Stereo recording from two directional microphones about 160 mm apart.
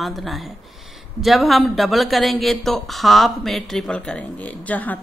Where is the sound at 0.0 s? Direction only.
Centre (ahead or behind).